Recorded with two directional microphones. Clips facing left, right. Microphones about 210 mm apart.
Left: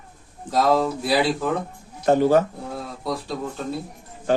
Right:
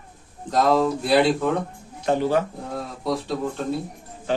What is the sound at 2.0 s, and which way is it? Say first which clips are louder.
Speech: left 4 dB; 45° left (ahead or behind).